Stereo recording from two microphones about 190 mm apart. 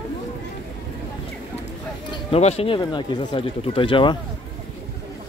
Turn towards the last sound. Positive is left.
turn(degrees=25)  # may be behind; listen again after turning